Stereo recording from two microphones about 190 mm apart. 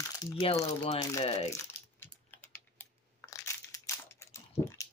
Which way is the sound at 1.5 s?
10° left (ahead or behind).